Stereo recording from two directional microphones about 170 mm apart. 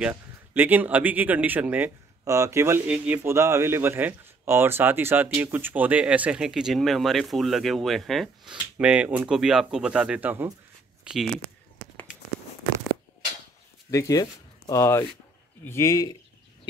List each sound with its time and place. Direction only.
0.6 s speech: 10° right (ahead or behind)
13.8 s a man's voice: 20° left (ahead or behind)